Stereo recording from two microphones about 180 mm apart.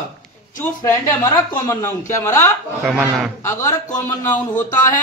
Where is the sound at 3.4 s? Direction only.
15° left (ahead or behind).